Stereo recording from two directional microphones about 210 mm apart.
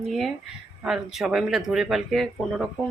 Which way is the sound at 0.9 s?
Centre (ahead or behind).